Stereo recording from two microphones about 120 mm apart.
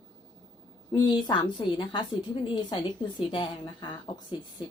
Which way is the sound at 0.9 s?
40° left (ahead or behind).